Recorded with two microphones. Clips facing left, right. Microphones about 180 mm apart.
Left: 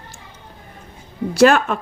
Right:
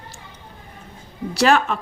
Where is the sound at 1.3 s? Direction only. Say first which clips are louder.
Left 4 dB; 50° left (ahead or behind).